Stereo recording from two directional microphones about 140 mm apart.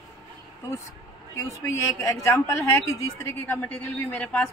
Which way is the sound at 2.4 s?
20° left (ahead or behind).